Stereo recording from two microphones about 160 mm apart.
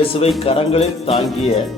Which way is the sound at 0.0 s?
35° left (ahead or behind).